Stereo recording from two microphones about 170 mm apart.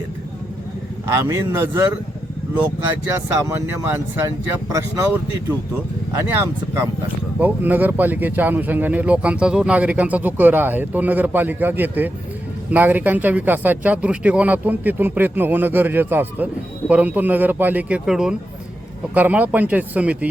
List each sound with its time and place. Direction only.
1.0 s speech: 15° right (ahead or behind)
3.1 s speech: 15° right (ahead or behind)